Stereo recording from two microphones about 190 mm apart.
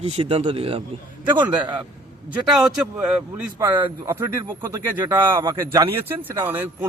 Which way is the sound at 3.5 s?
15° right (ahead or behind).